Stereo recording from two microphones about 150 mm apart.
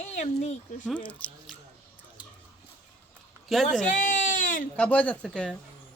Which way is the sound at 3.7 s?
55° left (ahead or behind).